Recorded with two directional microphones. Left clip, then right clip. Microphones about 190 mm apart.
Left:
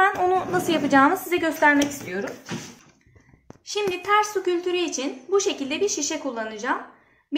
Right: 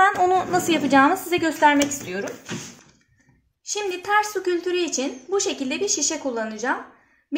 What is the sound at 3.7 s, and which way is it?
A woman's voice, 45° right (ahead or behind).